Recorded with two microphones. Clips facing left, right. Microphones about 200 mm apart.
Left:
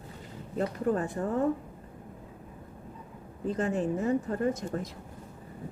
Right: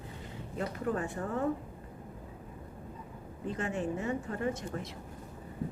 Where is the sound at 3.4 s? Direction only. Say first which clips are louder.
Left 5 dB; 35° left (ahead or behind).